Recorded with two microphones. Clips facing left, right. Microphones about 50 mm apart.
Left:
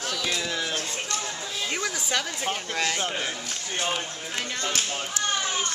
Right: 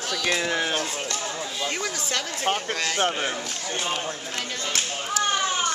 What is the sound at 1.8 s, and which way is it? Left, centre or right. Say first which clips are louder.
Speech: left 1 dB; centre.